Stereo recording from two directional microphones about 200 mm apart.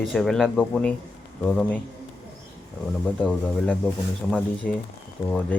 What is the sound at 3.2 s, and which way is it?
Speech, 5° left (ahead or behind).